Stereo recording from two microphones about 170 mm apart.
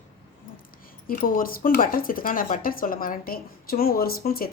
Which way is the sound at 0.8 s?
55° left (ahead or behind).